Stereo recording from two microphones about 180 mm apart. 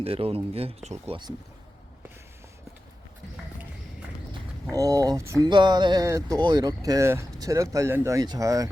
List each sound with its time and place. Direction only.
0.0 s speech: 35° right (ahead or behind)
4.7 s speech: 20° right (ahead or behind)